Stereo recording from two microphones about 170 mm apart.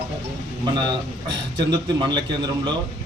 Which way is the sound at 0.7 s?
25° right (ahead or behind).